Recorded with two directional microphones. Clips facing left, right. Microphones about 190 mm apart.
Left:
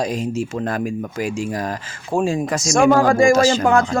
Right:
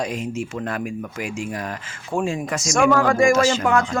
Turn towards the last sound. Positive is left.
turn(degrees=35)  # may be behind; listen again after turning